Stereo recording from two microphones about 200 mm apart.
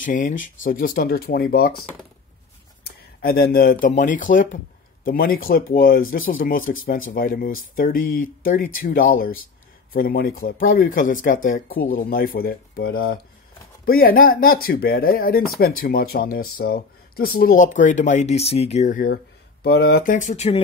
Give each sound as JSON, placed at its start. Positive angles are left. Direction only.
{"t": 0.0, "sound": "speech", "side_deg": 40}
{"t": 2.8, "sound": "a sound", "side_deg": 50}
{"t": 3.8, "sound": "speech", "side_deg": 40}
{"t": 19.6, "sound": "speech", "side_deg": 55}